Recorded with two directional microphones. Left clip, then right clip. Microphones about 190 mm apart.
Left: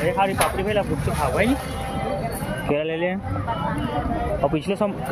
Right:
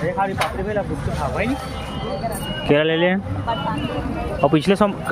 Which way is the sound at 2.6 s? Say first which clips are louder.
Right 7 dB; 25° right (ahead or behind).